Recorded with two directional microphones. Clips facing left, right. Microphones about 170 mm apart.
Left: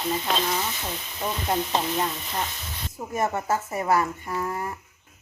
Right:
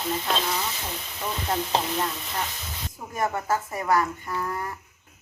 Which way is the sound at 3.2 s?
25° left (ahead or behind).